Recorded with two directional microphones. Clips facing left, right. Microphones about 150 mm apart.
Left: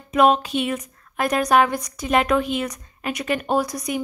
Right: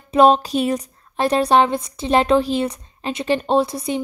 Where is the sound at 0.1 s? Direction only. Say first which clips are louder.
Right 3 dB; 30° right (ahead or behind).